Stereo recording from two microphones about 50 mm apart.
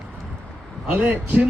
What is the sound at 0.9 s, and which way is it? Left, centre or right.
Speech, right.